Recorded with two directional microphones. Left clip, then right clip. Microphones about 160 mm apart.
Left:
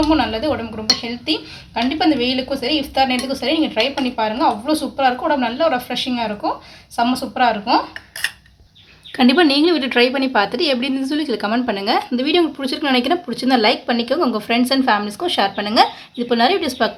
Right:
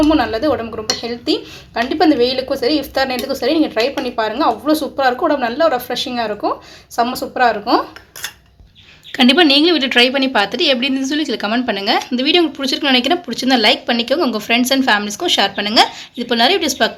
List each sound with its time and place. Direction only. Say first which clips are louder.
0.1 s speech: right 3 dB; 30° right (ahead or behind)
9.1 s a woman's voice: right 3 dB; centre (ahead or behind)